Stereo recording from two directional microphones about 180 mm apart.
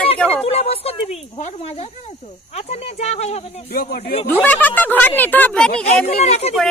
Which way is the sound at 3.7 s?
60° left (ahead or behind).